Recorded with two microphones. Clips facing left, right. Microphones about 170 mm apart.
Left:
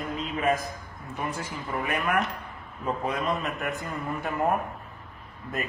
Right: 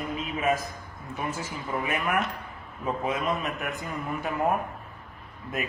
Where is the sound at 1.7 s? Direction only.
5° right (ahead or behind).